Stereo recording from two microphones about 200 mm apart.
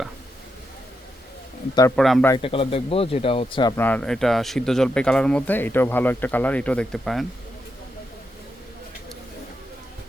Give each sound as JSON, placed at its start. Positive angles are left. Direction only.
{"t": 2.0, "sound": "speech", "side_deg": 0}
{"t": 2.4, "sound": "speech", "side_deg": 25}
{"t": 3.8, "sound": "speech", "side_deg": 5}